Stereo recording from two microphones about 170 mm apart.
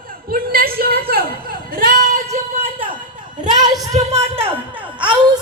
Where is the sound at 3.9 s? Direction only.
40° right (ahead or behind).